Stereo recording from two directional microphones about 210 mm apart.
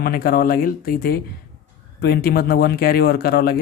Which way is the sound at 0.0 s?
45° left (ahead or behind).